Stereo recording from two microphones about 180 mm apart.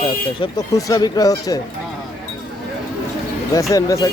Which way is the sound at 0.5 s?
20° left (ahead or behind).